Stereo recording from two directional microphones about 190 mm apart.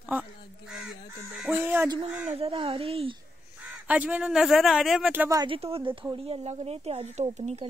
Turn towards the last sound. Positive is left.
turn(degrees=-35)  # may be behind; listen again after turning